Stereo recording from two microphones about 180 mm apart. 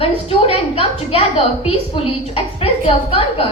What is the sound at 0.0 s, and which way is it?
A woman's voice, 30° left (ahead or behind).